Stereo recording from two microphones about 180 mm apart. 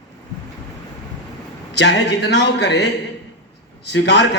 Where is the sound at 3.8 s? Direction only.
70° left (ahead or behind).